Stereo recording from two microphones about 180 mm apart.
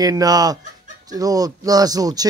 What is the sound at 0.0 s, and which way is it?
Speech, 20° right (ahead or behind).